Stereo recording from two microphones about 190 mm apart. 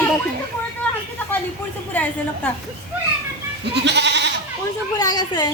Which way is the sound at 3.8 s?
65° right (ahead or behind).